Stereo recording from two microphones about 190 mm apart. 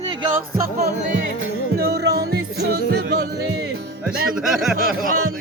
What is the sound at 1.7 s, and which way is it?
Music, 55° right (ahead or behind).